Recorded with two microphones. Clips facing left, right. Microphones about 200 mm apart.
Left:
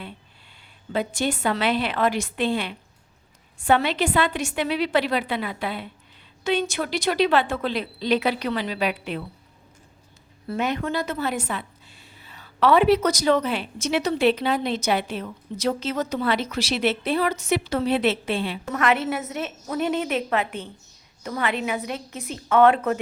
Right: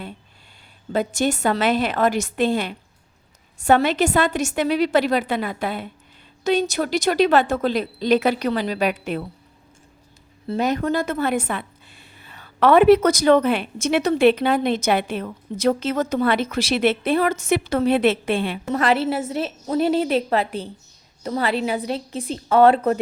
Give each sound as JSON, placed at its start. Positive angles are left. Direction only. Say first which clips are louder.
{"t": 0.9, "sound": "a woman's voice", "louder": "right 4 dB", "side_deg": -45}
{"t": 10.6, "sound": "a woman's voice", "louder": "right 4 dB", "side_deg": -40}
{"t": 18.6, "sound": "a woman's voice", "louder": "right 2 dB", "side_deg": -30}